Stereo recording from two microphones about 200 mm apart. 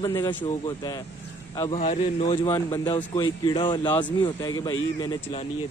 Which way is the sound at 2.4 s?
20° left (ahead or behind).